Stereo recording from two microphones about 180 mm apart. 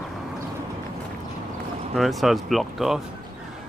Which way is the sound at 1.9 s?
Centre (ahead or behind).